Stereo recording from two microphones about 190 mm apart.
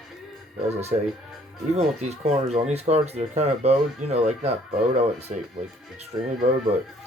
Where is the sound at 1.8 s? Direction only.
35° right (ahead or behind).